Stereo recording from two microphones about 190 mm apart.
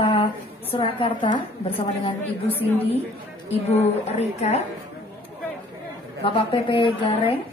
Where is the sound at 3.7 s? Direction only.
35° left (ahead or behind).